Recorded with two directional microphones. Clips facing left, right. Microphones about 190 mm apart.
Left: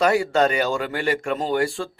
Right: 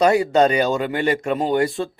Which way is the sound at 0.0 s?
20° right (ahead or behind).